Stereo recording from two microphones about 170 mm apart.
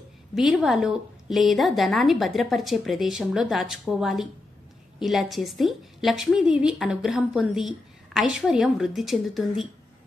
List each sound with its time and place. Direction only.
0.3 s a woman's voice: 5° right (ahead or behind)